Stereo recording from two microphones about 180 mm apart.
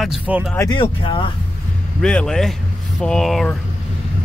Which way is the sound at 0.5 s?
25° left (ahead or behind).